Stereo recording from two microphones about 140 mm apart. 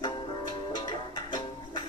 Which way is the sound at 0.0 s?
30° left (ahead or behind).